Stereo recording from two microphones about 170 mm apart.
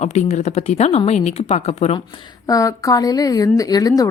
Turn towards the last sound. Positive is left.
turn(degrees=20)  # may be behind; listen again after turning